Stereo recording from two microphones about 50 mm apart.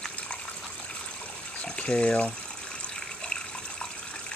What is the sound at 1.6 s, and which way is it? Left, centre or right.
Speech, left.